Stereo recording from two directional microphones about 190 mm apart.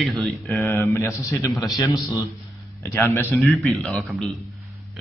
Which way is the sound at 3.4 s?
Centre (ahead or behind).